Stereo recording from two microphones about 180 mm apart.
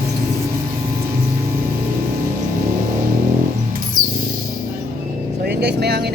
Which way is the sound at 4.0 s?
50° right (ahead or behind).